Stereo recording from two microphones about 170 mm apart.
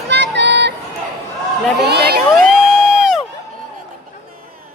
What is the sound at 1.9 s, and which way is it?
Crowd, 70° right (ahead or behind).